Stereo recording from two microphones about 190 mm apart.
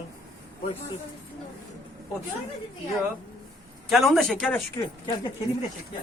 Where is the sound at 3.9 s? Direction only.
Centre (ahead or behind).